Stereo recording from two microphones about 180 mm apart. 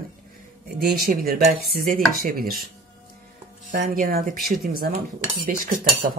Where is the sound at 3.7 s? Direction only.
50° right (ahead or behind).